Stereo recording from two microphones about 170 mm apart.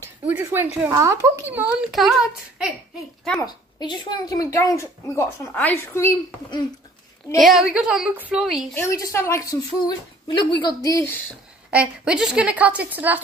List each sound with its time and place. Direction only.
0.0 s a woman's voice: 10° right (ahead or behind)
3.3 s a woman's voice: 25° left (ahead or behind)
7.3 s a woman's voice: centre (ahead or behind)
8.7 s a woman's voice: 15° left (ahead or behind)
11.7 s a woman's voice: 5° right (ahead or behind)